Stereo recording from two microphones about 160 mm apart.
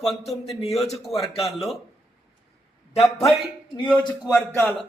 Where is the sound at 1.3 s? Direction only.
40° left (ahead or behind).